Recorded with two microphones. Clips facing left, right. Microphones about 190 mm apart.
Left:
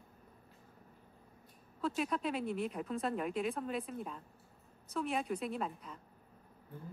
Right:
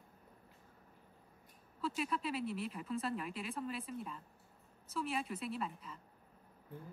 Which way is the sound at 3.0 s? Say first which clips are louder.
Left 6 dB; centre (ahead or behind).